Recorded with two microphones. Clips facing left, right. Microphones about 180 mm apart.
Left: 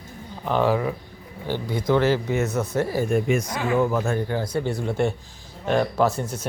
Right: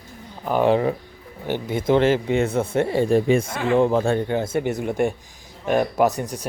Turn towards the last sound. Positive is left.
turn(degrees=-15)  # may be behind; listen again after turning